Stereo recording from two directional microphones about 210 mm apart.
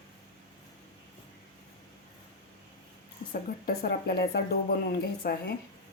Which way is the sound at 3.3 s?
45° left (ahead or behind).